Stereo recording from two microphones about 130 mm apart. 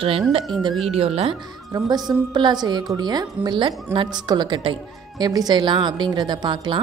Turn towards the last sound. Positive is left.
turn(degrees=-35)  # may be behind; listen again after turning